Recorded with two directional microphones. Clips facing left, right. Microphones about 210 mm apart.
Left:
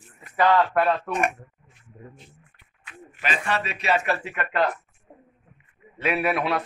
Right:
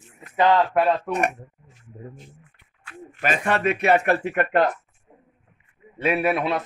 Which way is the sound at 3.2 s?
50° right (ahead or behind).